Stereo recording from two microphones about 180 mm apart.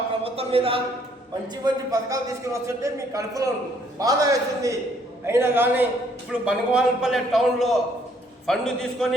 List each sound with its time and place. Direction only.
0.2 s a man's voice: 30° right (ahead or behind)
1.6 s a man's voice: 20° right (ahead or behind); by 9.0 s centre (ahead or behind)